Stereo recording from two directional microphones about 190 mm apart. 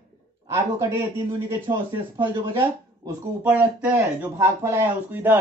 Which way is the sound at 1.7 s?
25° right (ahead or behind).